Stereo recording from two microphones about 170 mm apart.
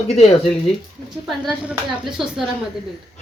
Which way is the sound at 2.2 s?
Centre (ahead or behind).